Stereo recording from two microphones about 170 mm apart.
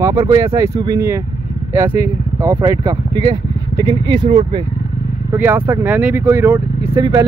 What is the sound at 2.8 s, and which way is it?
Speech, 30° right (ahead or behind).